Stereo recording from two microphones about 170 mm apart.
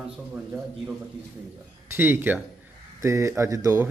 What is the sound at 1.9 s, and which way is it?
A man's voice, 15° right (ahead or behind).